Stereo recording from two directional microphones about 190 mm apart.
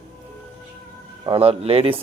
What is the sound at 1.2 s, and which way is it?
Speech, 30° right (ahead or behind).